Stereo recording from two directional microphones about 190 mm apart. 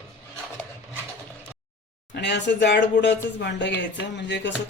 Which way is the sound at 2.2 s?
65° left (ahead or behind).